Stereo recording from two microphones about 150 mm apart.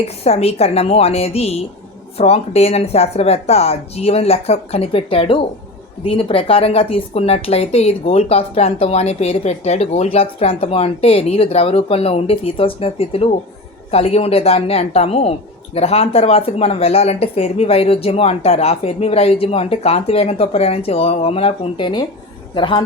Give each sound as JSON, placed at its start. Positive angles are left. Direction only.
{"t": 0.3, "sound": "speech", "side_deg": 45}